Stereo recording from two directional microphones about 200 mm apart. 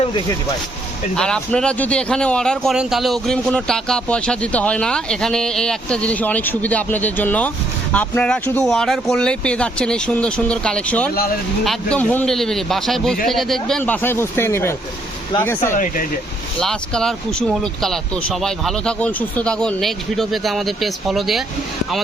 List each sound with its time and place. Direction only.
1.1 s speech: 5° left (ahead or behind)
15.7 s speech: 40° left (ahead or behind)
16.6 s speech: 5° left (ahead or behind)